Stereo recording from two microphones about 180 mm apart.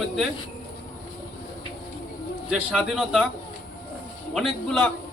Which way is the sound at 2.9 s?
5° right (ahead or behind).